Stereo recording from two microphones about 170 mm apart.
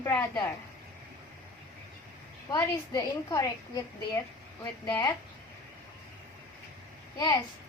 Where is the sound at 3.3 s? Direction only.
20° left (ahead or behind).